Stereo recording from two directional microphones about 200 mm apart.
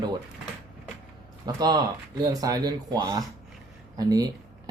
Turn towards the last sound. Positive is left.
turn(degrees=-20)  # may be behind; listen again after turning